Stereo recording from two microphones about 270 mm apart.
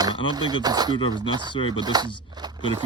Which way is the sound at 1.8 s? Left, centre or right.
Centre.